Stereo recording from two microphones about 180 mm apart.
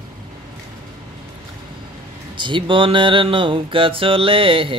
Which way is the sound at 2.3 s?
25° right (ahead or behind).